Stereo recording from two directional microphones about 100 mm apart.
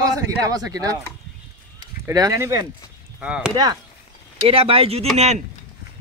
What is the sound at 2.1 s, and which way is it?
Speech, 40° right (ahead or behind).